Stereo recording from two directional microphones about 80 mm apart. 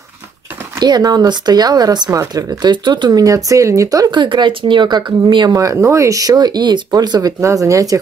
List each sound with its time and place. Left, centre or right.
0.7 s speech: right
2.0 s speech: right
2.6 s speech: right
4.1 s speech: right
5.8 s speech: right
7.3 s speech: right